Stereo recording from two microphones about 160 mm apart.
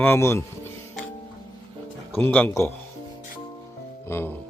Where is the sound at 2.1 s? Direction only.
10° left (ahead or behind).